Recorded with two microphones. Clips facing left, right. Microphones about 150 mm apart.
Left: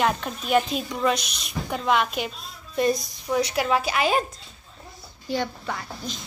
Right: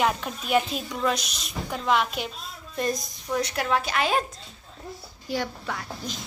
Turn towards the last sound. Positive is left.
turn(degrees=-5)  # may be behind; listen again after turning